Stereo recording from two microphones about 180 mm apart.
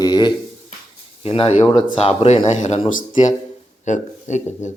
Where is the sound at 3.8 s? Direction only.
40° left (ahead or behind).